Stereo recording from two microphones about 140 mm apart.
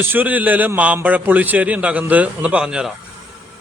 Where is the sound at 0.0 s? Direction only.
15° right (ahead or behind).